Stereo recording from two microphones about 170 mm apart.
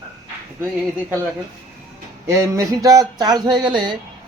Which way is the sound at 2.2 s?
20° right (ahead or behind).